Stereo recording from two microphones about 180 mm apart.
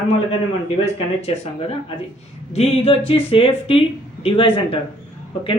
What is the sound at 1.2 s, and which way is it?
Speech, 35° left (ahead or behind).